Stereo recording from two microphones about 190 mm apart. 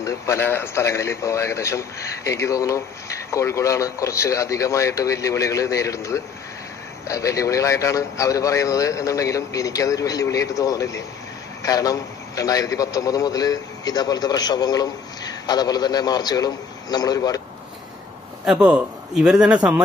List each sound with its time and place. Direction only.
0.0 s a man's voice: 15° left (ahead or behind)
18.4 s a man's voice: 5° right (ahead or behind)